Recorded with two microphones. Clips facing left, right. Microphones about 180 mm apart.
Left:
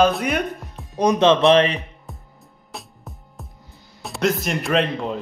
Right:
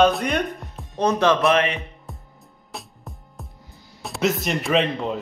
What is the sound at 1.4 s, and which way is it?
Speech, 35° left (ahead or behind).